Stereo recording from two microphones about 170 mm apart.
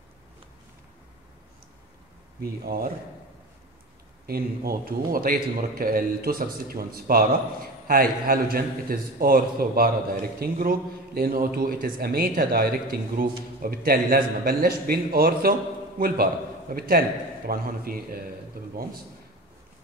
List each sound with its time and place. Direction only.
2.6 s a man's voice: 60° right (ahead or behind)
4.3 s a man's voice: 60° right (ahead or behind)